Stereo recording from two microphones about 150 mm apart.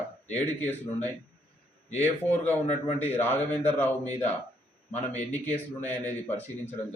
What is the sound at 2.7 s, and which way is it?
Speech, 50° left (ahead or behind).